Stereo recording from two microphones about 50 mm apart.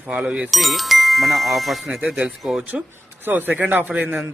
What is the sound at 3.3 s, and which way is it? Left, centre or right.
Speech, right.